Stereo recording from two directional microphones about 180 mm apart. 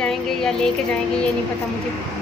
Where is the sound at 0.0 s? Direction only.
5° left (ahead or behind).